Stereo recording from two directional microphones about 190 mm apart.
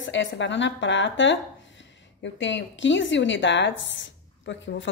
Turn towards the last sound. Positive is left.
turn(degrees=70)  # may be behind; listen again after turning